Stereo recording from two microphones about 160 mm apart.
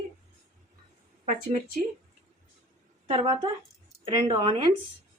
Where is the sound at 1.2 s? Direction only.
55° right (ahead or behind).